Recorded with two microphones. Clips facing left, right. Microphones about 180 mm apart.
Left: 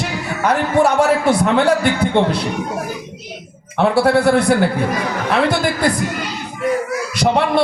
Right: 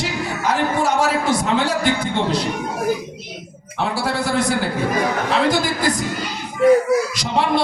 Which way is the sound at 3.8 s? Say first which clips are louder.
Left 8 dB; 60° left (ahead or behind).